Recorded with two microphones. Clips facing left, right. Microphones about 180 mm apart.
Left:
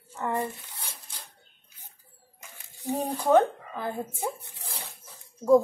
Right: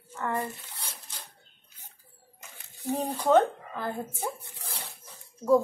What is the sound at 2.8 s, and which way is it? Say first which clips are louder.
A woman's voice: even; 10° left (ahead or behind).